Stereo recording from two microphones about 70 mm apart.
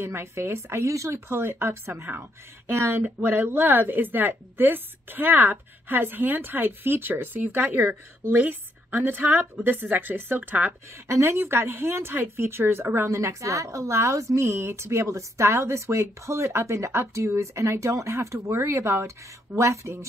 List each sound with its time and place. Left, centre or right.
0.0 s speech: right
11.1 s speech: right